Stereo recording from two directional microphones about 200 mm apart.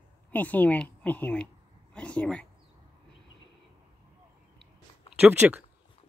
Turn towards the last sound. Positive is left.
turn(degrees=-10)  # may be behind; listen again after turning